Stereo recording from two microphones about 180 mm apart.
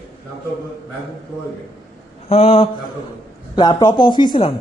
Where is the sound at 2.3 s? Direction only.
35° left (ahead or behind).